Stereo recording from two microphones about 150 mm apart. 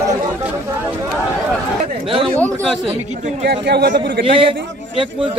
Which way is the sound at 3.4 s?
90° right.